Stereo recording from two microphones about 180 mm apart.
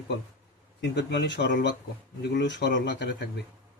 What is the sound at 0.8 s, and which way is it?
Speech, 75° left (ahead or behind).